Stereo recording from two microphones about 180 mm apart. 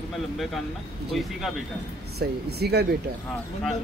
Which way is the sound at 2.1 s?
60° right (ahead or behind).